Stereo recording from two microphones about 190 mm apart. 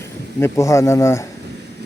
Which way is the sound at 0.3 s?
15° left (ahead or behind).